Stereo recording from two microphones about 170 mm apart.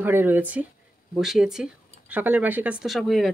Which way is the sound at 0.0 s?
10° right (ahead or behind).